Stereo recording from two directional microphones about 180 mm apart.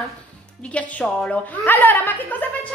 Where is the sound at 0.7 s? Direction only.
5° left (ahead or behind).